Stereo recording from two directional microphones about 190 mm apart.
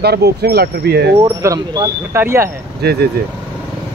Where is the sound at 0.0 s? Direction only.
55° right (ahead or behind).